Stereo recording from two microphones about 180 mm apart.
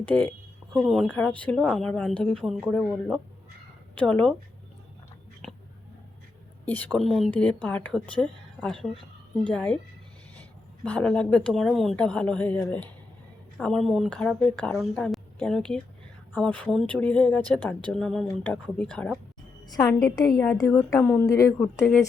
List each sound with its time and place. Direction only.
0.0 s speech: 10° left (ahead or behind)
5.4 s a sound: centre (ahead or behind)
6.7 s a woman's voice: 10° left (ahead or behind)
10.8 s a woman's voice: 5° left (ahead or behind)
19.7 s a woman's voice: 20° left (ahead or behind)